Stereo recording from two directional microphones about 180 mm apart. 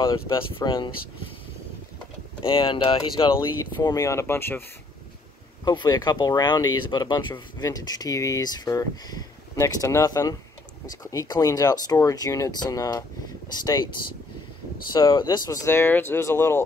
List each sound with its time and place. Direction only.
0.7 s speech: 25° left (ahead or behind)
2.4 s speech: 30° left (ahead or behind); by 4.6 s 10° left (ahead or behind)
5.7 s speech: 20° left (ahead or behind)
14.9 s speech: 25° left (ahead or behind)